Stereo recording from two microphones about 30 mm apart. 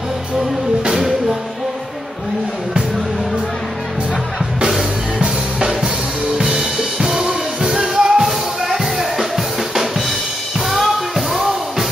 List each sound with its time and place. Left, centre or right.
6.3 s music: centre
8.2 s music: centre
10.7 s music: centre